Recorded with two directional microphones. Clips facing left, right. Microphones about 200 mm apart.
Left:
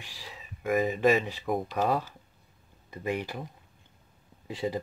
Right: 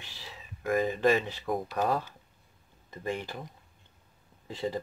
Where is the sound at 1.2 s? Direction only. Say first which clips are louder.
Left 2 dB; 5° left (ahead or behind).